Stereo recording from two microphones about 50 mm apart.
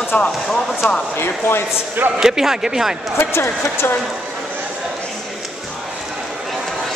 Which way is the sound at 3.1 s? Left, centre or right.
Left.